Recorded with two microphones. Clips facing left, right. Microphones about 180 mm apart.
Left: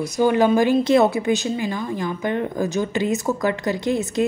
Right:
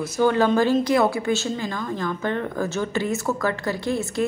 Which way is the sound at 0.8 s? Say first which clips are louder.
Left 3 dB; 25° left (ahead or behind).